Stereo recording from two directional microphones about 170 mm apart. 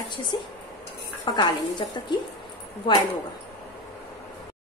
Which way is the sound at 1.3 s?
25° left (ahead or behind).